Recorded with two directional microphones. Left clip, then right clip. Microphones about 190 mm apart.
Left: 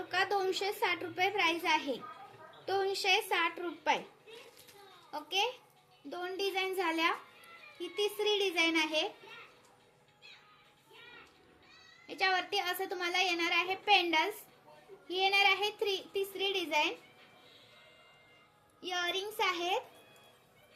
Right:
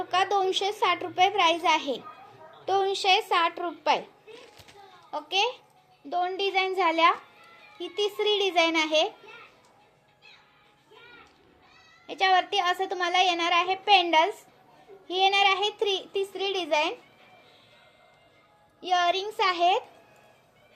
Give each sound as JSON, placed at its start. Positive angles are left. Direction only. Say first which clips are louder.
{"t": 0.1, "sound": "a child's voice", "louder": "right 7 dB", "side_deg": 20}
{"t": 5.1, "sound": "a child's voice", "louder": "right 7 dB", "side_deg": 20}
{"t": 12.0, "sound": "a child's voice", "louder": "right 9 dB", "side_deg": 20}
{"t": 18.8, "sound": "a child's voice", "louder": "right 11 dB", "side_deg": 20}